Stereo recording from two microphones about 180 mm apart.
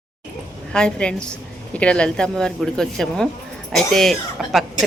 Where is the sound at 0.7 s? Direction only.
5° left (ahead or behind).